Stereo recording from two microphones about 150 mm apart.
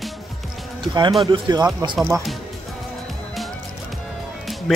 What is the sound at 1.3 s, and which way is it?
Speech, 30° right (ahead or behind).